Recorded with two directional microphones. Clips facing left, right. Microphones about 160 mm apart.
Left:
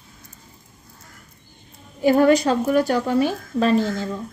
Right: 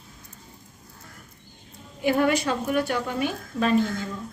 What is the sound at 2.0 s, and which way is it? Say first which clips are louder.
Speech: left 7 dB; 40° left (ahead or behind).